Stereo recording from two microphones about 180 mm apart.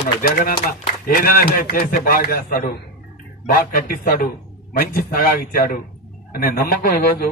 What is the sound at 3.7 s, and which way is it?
A man's voice, 55° left (ahead or behind).